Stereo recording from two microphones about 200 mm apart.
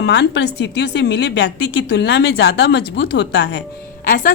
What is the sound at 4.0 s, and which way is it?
Speech, 45° left (ahead or behind).